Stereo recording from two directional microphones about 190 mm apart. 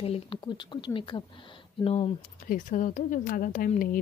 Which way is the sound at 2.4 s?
45° left (ahead or behind).